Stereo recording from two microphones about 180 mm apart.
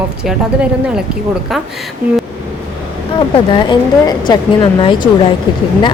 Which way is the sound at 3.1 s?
25° left (ahead or behind).